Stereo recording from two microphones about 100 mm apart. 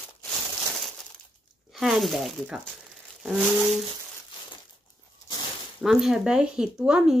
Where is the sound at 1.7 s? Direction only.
Centre (ahead or behind).